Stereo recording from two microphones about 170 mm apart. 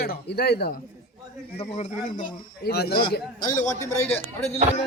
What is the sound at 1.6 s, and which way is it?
Speech, 45° left (ahead or behind).